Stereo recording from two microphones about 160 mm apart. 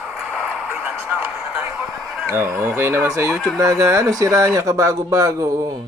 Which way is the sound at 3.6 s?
20° right (ahead or behind).